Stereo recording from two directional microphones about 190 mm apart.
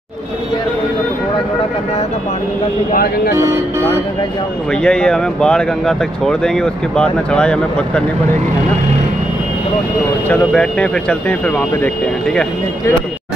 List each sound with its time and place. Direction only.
2.9 s speech: 50° left (ahead or behind)
4.8 s speech: 5° left (ahead or behind)
10.2 s speech: 5° left (ahead or behind)